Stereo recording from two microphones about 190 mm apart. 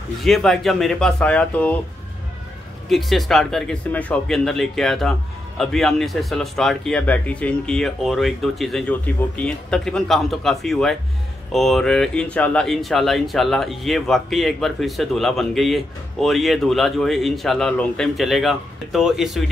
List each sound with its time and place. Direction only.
0.2 s speech: centre (ahead or behind)
2.9 s speech: centre (ahead or behind)